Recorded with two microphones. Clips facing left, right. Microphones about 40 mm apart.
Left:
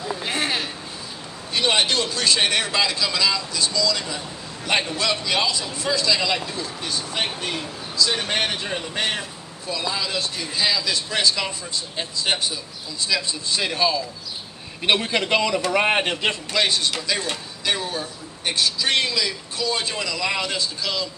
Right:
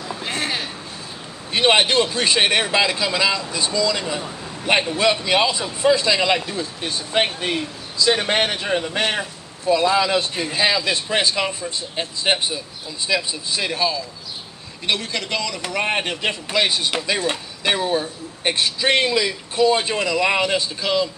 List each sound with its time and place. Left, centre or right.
0.0 s a sound: centre
1.5 s a man's voice: right
13.5 s a man's voice: centre
14.9 s a man's voice: left
15.7 s a man's voice: centre
16.5 s a man's voice: centre